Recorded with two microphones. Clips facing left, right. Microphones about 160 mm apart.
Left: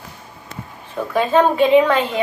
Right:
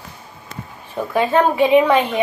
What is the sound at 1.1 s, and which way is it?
Speech, 15° right (ahead or behind).